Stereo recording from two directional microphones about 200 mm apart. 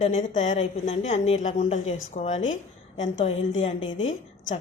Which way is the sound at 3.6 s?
25° left (ahead or behind).